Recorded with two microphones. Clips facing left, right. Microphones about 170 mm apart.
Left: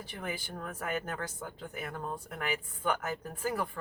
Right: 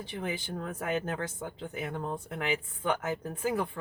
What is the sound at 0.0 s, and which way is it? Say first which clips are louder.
Speech: right 4 dB; 20° right (ahead or behind).